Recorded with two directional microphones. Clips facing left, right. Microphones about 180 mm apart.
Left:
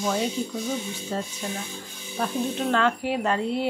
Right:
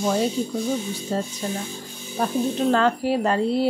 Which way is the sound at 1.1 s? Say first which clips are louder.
Right 4 dB; 35° right (ahead or behind).